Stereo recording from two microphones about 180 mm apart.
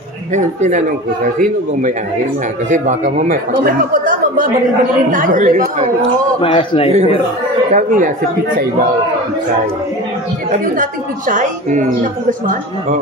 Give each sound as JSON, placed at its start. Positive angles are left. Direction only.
{"t": 0.3, "sound": "a woman's voice", "side_deg": -45}
{"t": 6.4, "sound": "a man's voice", "side_deg": 30}
{"t": 7.7, "sound": "a woman's voice", "side_deg": -45}
{"t": 10.5, "sound": "a woman's voice", "side_deg": -45}